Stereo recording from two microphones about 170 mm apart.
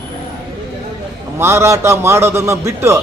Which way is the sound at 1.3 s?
15° right (ahead or behind).